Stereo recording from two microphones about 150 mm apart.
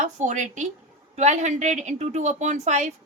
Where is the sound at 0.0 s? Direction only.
50° right (ahead or behind).